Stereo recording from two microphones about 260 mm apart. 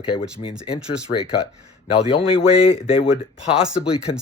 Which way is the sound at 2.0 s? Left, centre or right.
Left.